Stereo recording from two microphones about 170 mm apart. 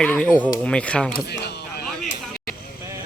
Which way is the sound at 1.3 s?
75° left (ahead or behind).